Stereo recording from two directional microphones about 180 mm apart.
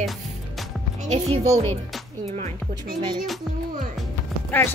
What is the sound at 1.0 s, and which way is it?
Speech, 35° right (ahead or behind).